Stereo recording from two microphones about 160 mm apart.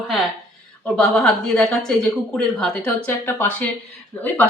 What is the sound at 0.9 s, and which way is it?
Speech, 5° left (ahead or behind).